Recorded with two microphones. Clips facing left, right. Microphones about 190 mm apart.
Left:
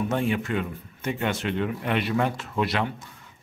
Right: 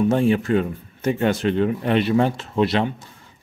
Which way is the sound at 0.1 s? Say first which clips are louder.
Right 7 dB; 35° right (ahead or behind).